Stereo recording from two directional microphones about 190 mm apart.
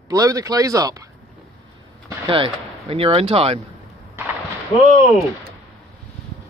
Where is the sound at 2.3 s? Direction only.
30° right (ahead or behind).